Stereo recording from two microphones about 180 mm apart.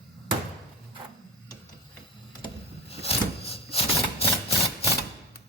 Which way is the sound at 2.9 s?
35° left (ahead or behind).